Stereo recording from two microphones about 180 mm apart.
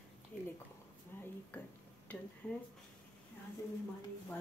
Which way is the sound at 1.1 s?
10° left (ahead or behind).